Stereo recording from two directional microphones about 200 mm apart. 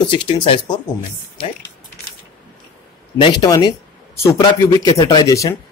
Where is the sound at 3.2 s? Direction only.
20° left (ahead or behind).